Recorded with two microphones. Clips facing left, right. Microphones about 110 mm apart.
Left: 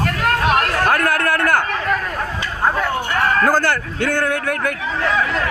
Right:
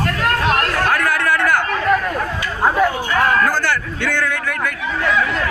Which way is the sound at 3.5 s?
45° left (ahead or behind).